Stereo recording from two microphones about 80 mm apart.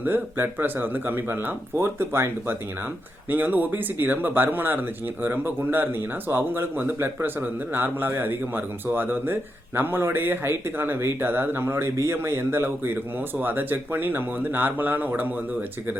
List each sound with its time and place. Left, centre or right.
0.0 s speech: right